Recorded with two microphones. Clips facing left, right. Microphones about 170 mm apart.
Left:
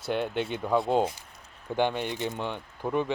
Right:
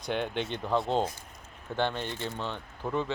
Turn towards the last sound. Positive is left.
turn(degrees=15)  # may be behind; listen again after turning